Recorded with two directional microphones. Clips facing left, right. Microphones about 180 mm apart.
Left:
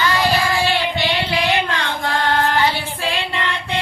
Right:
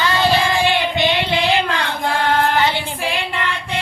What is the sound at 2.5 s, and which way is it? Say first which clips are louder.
Child singing: right 1 dB; 15° right (ahead or behind).